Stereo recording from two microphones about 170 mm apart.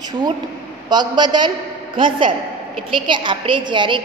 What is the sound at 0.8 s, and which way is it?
Speech, 25° right (ahead or behind).